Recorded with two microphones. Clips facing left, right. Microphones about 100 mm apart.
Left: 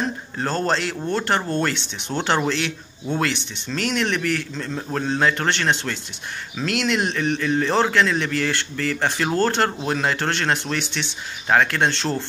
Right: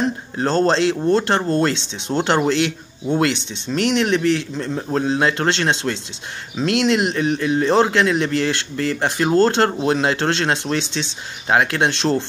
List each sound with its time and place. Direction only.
0.0 s speech: 30° right (ahead or behind)
3.6 s speech: 20° right (ahead or behind)